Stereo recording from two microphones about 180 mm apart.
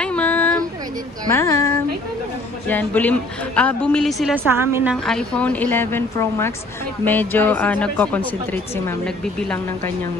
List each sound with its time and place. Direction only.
0.0 s child singing: 5° left (ahead or behind)
1.3 s speech: 15° left (ahead or behind)
2.7 s a woman's voice: 10° left (ahead or behind)
4.4 s a woman's voice: 10° right (ahead or behind)
5.0 s a woman's voice: 5° left (ahead or behind)